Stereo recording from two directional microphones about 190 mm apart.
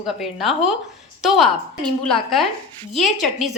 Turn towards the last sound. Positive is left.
turn(degrees=0)  # may be behind; listen again after turning